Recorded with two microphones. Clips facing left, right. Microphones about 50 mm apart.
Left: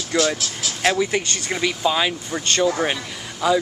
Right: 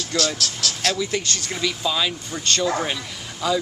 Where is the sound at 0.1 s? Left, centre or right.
Centre.